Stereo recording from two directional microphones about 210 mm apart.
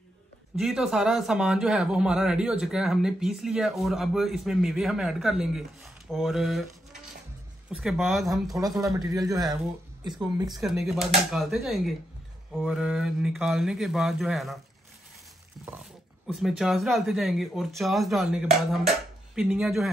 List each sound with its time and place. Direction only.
0.6 s speech: 5° right (ahead or behind)
7.7 s speech: centre (ahead or behind)
8.8 s speech: 15° right (ahead or behind)
10.5 s speech: centre (ahead or behind)
15.6 s speech: 5° right (ahead or behind)